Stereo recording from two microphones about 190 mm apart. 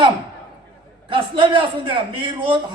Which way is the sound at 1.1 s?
25° right (ahead or behind).